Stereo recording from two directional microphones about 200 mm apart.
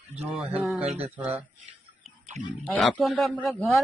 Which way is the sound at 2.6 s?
5° left (ahead or behind).